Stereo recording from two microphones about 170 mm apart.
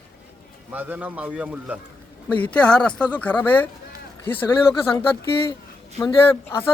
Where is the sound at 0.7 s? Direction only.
10° right (ahead or behind).